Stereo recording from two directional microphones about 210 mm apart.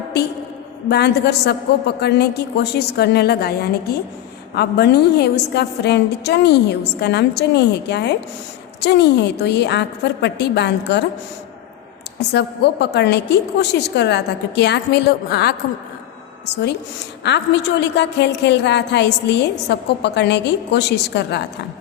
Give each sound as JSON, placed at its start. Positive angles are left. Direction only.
{"t": 0.9, "sound": "a woman's voice", "side_deg": 50}
{"t": 12.3, "sound": "a woman's voice", "side_deg": 55}
{"t": 17.2, "sound": "a woman's voice", "side_deg": 55}